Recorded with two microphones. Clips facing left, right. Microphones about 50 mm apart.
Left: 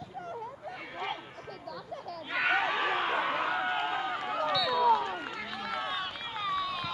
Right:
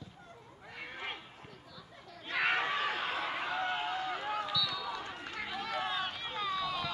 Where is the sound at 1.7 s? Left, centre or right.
Left.